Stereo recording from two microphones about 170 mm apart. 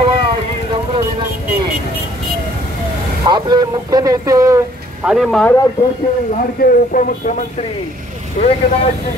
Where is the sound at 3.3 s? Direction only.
25° right (ahead or behind).